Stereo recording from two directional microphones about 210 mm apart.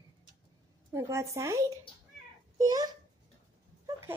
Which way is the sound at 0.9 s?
15° right (ahead or behind).